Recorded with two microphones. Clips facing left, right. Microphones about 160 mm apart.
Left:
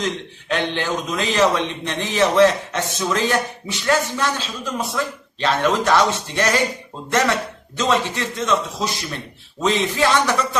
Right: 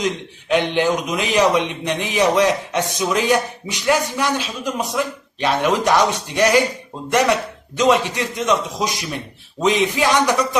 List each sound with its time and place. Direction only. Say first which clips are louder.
0.0 s a man's voice: right 2 dB; 15° right (ahead or behind)